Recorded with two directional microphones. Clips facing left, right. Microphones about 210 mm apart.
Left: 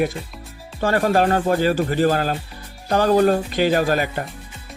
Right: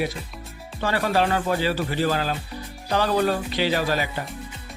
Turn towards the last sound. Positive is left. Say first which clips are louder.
# left 5 dB
turn(degrees=50)  # may be behind; listen again after turning